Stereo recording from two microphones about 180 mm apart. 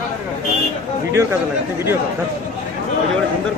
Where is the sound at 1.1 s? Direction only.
15° right (ahead or behind).